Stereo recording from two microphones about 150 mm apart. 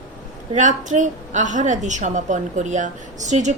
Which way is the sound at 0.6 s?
55° right (ahead or behind).